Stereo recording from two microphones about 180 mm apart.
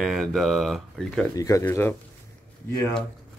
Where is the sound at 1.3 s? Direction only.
20° left (ahead or behind).